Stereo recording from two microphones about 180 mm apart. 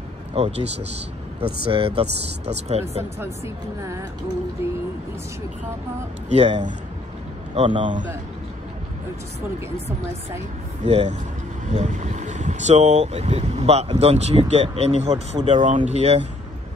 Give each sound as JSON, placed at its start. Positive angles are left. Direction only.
{"t": 0.3, "sound": "speech", "side_deg": -35}
{"t": 3.2, "sound": "a woman's voice", "side_deg": -15}
{"t": 6.2, "sound": "speech", "side_deg": -40}
{"t": 7.5, "sound": "speech", "side_deg": -30}
{"t": 10.8, "sound": "speech", "side_deg": -40}